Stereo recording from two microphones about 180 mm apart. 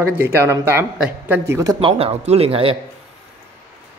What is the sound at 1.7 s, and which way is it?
Speech, 35° right (ahead or behind).